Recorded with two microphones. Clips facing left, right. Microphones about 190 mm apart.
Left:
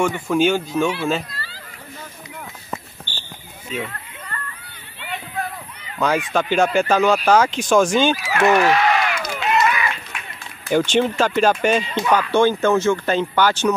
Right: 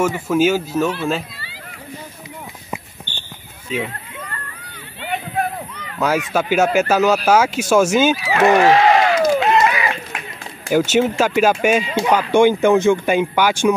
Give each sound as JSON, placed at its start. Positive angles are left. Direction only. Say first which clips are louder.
{"t": 0.0, "sound": "speech", "louder": "right 2 dB", "side_deg": -5}
{"t": 5.9, "sound": "speech", "louder": "right 1 dB", "side_deg": -5}
{"t": 8.5, "sound": "a sound", "louder": "right 4 dB", "side_deg": -30}
{"t": 9.2, "sound": "run", "louder": "right 6 dB", "side_deg": -40}
{"t": 10.7, "sound": "speech", "louder": "right 2 dB", "side_deg": -10}